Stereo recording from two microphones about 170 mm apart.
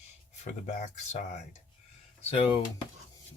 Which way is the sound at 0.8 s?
45° left (ahead or behind).